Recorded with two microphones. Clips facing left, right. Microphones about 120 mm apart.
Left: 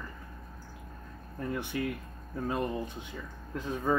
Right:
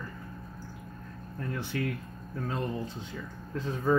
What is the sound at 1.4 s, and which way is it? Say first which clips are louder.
Speech: even; 15° left (ahead or behind).